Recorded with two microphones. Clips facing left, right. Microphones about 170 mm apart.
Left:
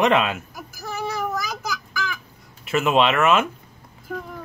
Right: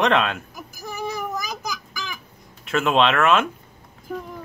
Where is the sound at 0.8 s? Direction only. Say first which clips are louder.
Left 2 dB; 15° right (ahead or behind).